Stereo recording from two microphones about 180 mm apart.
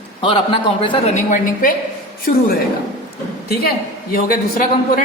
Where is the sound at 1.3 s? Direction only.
50° left (ahead or behind).